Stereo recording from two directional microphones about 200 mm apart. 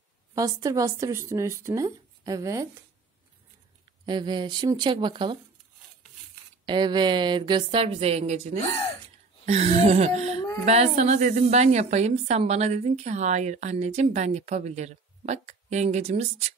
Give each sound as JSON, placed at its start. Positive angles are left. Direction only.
{"t": 0.3, "sound": "speech", "side_deg": -15}
{"t": 4.0, "sound": "speech", "side_deg": -25}
{"t": 6.6, "sound": "speech", "side_deg": -20}
{"t": 8.5, "sound": "speech", "side_deg": 30}
{"t": 9.5, "sound": "a woman's voice", "side_deg": -35}